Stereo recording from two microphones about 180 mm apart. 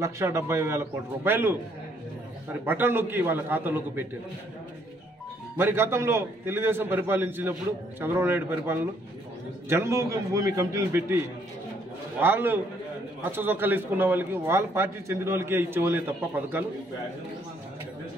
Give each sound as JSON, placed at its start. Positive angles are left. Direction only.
{"t": 0.0, "sound": "a man's voice", "side_deg": -15}
{"t": 2.6, "sound": "a man's voice", "side_deg": -10}
{"t": 5.6, "sound": "a man's voice", "side_deg": -15}